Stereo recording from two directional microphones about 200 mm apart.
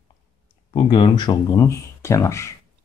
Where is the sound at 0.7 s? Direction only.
25° left (ahead or behind).